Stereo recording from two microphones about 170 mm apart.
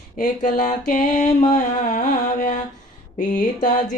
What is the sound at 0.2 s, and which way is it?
Mantra, 50° left (ahead or behind).